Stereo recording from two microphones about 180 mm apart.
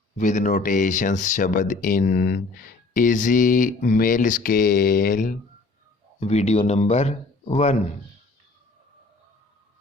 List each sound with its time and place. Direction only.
0.2 s speech: 45° left (ahead or behind)
6.1 s speech: 35° left (ahead or behind)